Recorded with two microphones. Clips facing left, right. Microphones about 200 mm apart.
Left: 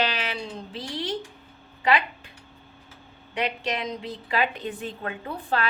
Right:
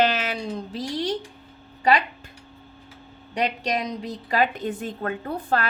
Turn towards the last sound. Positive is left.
turn(degrees=-45)  # may be behind; listen again after turning